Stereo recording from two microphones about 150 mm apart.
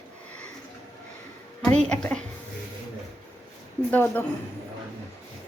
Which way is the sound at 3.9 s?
10° left (ahead or behind).